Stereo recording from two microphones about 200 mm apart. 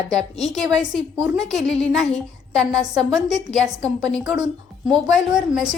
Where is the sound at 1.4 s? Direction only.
Centre (ahead or behind).